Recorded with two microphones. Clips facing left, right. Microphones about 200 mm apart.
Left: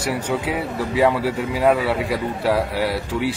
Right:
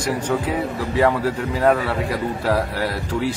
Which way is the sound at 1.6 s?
5° left (ahead or behind).